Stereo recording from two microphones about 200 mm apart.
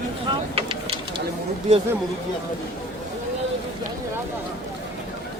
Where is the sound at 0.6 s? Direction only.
30° right (ahead or behind).